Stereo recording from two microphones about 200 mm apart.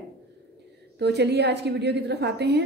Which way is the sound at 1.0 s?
60° right (ahead or behind).